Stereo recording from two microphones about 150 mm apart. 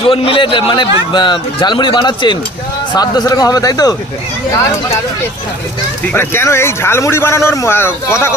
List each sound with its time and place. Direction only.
0.0 s speech: 40° left (ahead or behind)
6.1 s speech: 15° left (ahead or behind)